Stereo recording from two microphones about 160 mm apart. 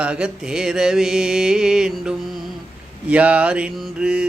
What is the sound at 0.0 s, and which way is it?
Mantra, 5° right (ahead or behind).